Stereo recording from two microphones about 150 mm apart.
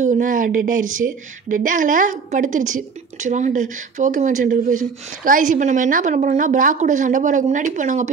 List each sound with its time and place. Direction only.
0.0 s a woman's voice: 60° right (ahead or behind)